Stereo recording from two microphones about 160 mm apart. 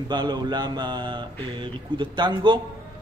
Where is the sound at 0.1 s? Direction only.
25° right (ahead or behind).